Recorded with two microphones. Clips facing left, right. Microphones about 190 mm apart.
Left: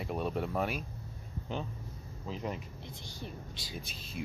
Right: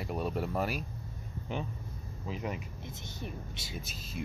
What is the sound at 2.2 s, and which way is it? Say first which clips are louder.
Speech: right 1 dB; 5° right (ahead or behind).